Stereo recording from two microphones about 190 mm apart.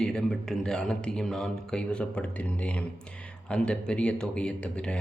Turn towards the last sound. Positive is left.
turn(degrees=5)  # may be behind; listen again after turning